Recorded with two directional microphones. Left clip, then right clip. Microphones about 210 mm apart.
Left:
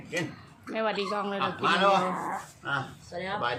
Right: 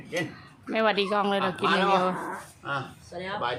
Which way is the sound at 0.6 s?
30° right (ahead or behind).